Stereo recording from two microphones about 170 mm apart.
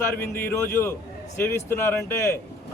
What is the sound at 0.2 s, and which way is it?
A man's voice, 15° left (ahead or behind).